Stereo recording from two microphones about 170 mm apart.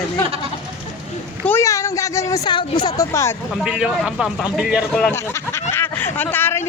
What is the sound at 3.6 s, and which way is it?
A woman's voice, 5° right (ahead or behind).